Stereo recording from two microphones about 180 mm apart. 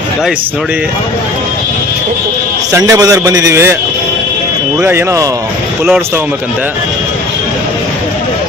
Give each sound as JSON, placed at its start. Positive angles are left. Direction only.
{"t": 2.7, "sound": "a man's voice", "side_deg": -15}
{"t": 4.8, "sound": "speech", "side_deg": -15}